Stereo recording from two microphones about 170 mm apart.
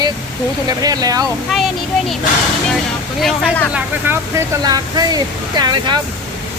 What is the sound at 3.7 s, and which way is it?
Speech, 10° right (ahead or behind).